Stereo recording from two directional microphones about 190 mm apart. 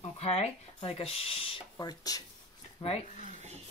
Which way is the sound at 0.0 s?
30° left (ahead or behind).